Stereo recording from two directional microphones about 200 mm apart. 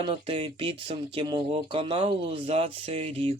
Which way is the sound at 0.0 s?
25° right (ahead or behind).